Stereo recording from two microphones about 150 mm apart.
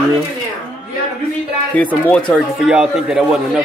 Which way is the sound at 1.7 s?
10° left (ahead or behind).